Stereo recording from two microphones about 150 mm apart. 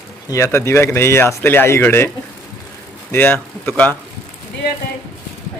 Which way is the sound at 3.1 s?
15° left (ahead or behind).